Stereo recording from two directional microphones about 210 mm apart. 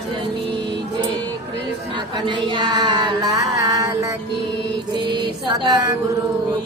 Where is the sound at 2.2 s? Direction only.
20° right (ahead or behind).